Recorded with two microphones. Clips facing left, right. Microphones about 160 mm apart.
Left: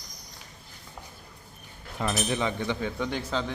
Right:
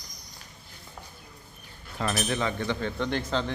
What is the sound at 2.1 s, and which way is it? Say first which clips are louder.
Speech: left 1 dB; 15° left (ahead or behind).